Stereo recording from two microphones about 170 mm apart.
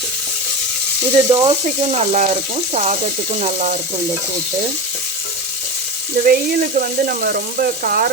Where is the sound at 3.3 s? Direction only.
40° right (ahead or behind).